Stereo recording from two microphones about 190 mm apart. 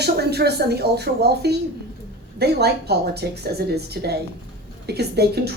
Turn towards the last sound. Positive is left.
turn(degrees=-60)  # may be behind; listen again after turning